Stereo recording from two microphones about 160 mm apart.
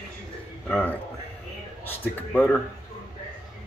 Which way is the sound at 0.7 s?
10° left (ahead or behind).